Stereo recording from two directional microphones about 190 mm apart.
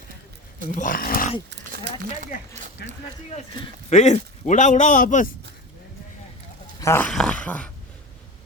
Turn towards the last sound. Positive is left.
turn(degrees=5)  # may be behind; listen again after turning